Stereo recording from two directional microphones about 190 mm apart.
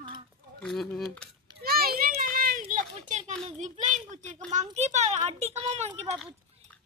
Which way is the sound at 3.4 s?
35° right (ahead or behind).